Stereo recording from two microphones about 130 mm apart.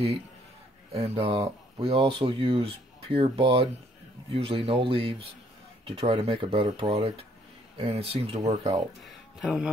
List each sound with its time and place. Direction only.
0.9 s speech: 50° right (ahead or behind)
1.4 s speech: 30° right (ahead or behind)
2.0 s speech: 40° right (ahead or behind)
8.5 s speech: 60° right (ahead or behind)
9.0 s speech: 5° right (ahead or behind)